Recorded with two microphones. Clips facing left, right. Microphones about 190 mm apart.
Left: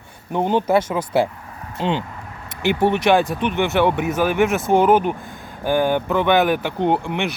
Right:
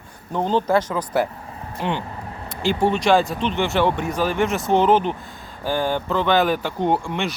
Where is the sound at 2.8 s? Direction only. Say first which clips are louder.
Left 1 dB; 20° left (ahead or behind).